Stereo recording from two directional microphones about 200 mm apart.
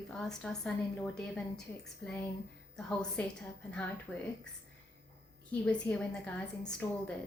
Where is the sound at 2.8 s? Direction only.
5° left (ahead or behind).